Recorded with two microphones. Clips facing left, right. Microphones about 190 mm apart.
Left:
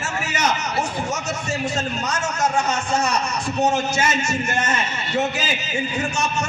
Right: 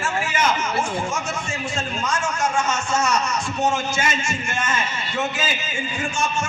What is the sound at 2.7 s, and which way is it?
Speech, 35° left (ahead or behind).